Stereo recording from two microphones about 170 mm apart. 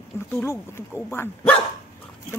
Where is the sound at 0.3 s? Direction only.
15° left (ahead or behind).